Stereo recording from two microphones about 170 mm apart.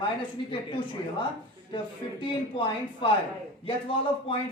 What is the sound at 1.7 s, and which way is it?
Speech, 30° left (ahead or behind).